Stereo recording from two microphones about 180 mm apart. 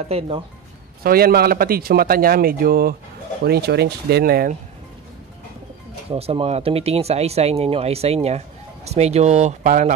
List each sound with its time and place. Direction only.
0.1 s speech: 35° right (ahead or behind)
1.0 s speech: 55° right (ahead or behind)
6.0 s speech: 35° right (ahead or behind)